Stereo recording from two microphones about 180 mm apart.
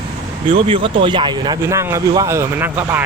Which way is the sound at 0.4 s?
30° right (ahead or behind).